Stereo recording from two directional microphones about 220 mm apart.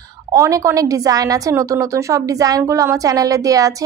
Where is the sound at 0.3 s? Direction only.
15° right (ahead or behind).